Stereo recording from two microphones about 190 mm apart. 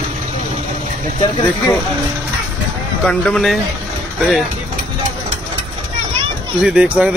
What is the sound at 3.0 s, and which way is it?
Speech, 5° left (ahead or behind).